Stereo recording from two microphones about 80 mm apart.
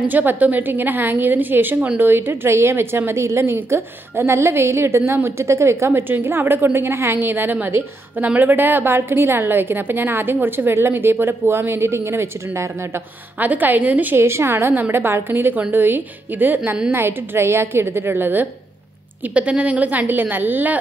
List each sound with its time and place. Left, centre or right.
0.1 s a woman's voice: right
13.4 s a woman's voice: right
16.9 s a woman's voice: right